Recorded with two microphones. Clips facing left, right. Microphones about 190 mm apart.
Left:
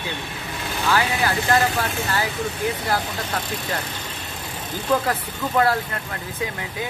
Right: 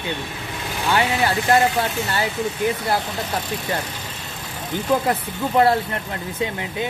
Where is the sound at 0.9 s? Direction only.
25° right (ahead or behind).